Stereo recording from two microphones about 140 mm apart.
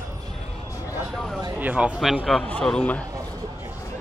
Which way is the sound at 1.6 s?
10° right (ahead or behind).